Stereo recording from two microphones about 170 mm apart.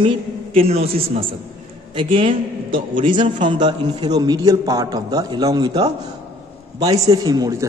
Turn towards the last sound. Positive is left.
turn(degrees=-20)  # may be behind; listen again after turning